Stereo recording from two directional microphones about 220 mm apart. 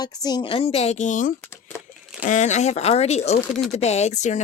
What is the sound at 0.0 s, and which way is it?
Speech, 20° left (ahead or behind).